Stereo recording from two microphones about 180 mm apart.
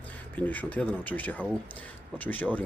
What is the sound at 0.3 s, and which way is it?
A man's voice, 10° left (ahead or behind).